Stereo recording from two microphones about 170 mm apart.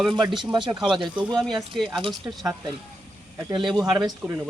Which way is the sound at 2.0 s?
25° right (ahead or behind).